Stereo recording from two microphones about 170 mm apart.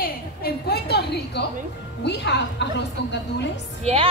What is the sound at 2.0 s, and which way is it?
A woman's voice, 90° left.